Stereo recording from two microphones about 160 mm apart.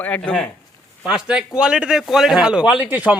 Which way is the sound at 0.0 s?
10° left (ahead or behind).